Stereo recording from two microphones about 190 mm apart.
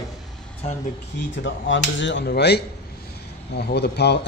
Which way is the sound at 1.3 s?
75° left (ahead or behind).